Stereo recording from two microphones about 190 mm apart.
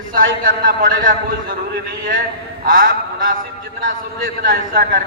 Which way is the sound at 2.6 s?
45° right (ahead or behind).